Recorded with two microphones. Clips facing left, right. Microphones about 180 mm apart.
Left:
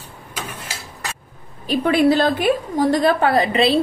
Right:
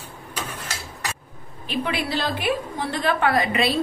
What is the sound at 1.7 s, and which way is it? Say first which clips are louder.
A woman's voice: left 10 dB; 45° left (ahead or behind).